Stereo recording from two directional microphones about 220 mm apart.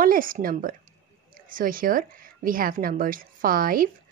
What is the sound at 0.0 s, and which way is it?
A woman's voice, 40° right (ahead or behind).